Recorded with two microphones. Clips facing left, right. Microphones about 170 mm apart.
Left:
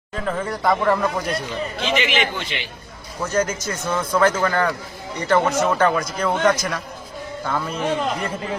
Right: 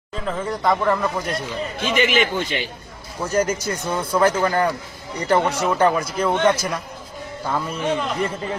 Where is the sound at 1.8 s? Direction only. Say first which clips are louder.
Right 3 dB; 50° right (ahead or behind).